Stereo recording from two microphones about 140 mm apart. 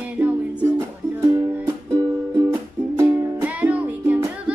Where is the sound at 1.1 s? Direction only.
20° right (ahead or behind).